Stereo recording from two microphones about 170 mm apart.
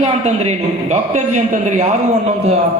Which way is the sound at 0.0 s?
40° right (ahead or behind).